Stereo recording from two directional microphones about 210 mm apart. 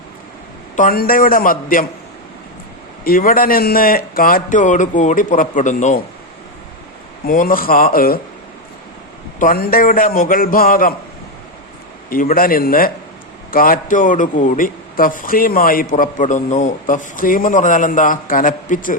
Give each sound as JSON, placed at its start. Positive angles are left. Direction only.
{"t": 0.8, "sound": "a man's voice", "side_deg": 45}
{"t": 3.0, "sound": "a man's voice", "side_deg": 45}
{"t": 7.3, "sound": "a man's voice", "side_deg": 40}
{"t": 9.4, "sound": "a man's voice", "side_deg": 40}
{"t": 12.0, "sound": "a man's voice", "side_deg": 45}